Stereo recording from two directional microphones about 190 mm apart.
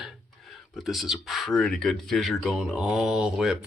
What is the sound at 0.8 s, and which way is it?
Speech, centre (ahead or behind).